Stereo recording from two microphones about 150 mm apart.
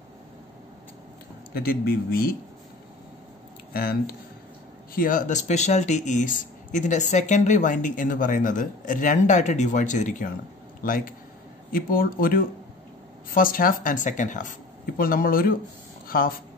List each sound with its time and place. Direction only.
1.5 s speech: 90° left
3.7 s speech: 90° left
4.9 s speech: 65° left (ahead or behind)
15.0 s speech: 70° left (ahead or behind)